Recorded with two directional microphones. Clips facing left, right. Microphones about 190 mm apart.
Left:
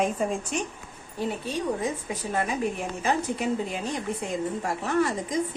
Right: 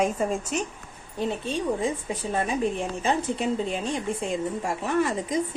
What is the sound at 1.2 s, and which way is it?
Speech, 25° right (ahead or behind).